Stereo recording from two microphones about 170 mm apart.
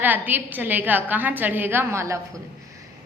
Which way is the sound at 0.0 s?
10° right (ahead or behind).